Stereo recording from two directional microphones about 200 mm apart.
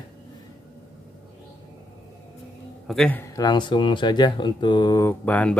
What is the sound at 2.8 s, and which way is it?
Speech, centre (ahead or behind).